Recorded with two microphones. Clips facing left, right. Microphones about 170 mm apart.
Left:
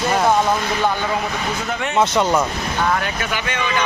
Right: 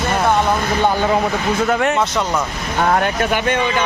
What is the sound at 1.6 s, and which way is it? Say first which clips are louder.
Speech: even; 55° right (ahead or behind).